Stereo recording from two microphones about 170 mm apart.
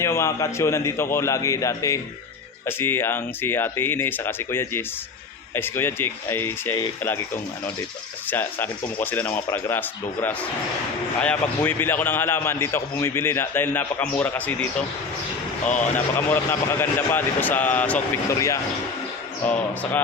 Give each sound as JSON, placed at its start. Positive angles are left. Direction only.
{"t": 0.0, "sound": "a man's voice", "side_deg": 15}
{"t": 8.3, "sound": "a man's voice", "side_deg": 10}
{"t": 16.1, "sound": "a man's voice", "side_deg": 10}